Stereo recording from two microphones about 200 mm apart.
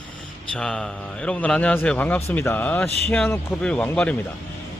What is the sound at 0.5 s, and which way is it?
A man's voice, 5° left (ahead or behind).